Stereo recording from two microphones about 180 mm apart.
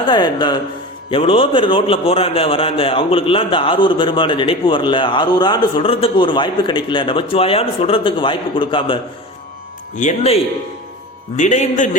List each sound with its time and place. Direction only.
0.1 s a man's voice: 25° left (ahead or behind)
9.9 s a man's voice: 40° left (ahead or behind)
11.3 s a man's voice: 45° left (ahead or behind)